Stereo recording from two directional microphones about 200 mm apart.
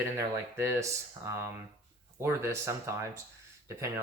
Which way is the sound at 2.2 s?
15° right (ahead or behind).